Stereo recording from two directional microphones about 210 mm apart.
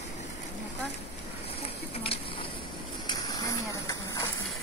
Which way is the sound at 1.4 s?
25° left (ahead or behind).